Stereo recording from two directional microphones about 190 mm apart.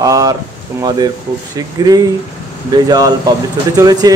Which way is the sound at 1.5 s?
20° right (ahead or behind).